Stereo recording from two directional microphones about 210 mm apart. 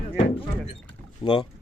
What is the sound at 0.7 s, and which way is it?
Rowboat, 20° left (ahead or behind).